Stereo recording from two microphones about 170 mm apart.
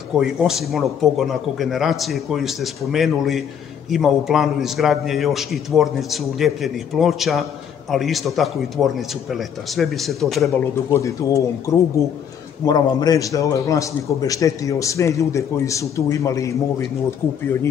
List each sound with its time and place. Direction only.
0.1 s a man's voice: 5° right (ahead or behind)
10.9 s a man's voice: 20° left (ahead or behind)